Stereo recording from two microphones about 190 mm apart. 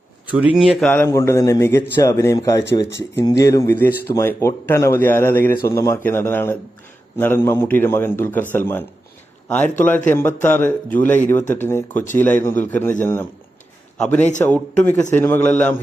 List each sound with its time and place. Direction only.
0.3 s speech: 5° right (ahead or behind)
0.9 s speech: 10° left (ahead or behind)
14.5 s speech: 10° left (ahead or behind)